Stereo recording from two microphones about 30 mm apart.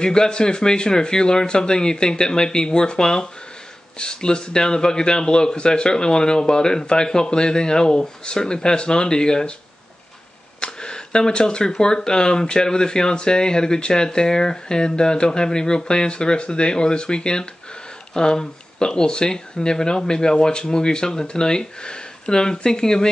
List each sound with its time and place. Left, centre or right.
0.0 s speech: left
10.6 s a sound: left
11.8 s speech: left